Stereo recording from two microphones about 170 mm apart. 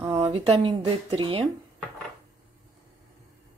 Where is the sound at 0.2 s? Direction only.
35° right (ahead or behind).